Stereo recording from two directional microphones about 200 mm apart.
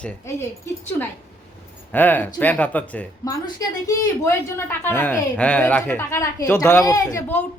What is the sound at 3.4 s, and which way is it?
Speech, 20° left (ahead or behind).